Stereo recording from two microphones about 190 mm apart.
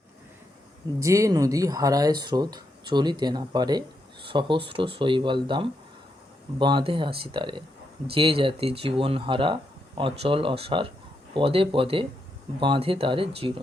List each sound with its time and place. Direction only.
0.9 s speech: 15° right (ahead or behind)